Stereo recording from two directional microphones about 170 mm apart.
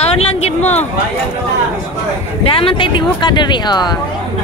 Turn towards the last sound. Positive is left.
turn(degrees=25)  # may be behind; listen again after turning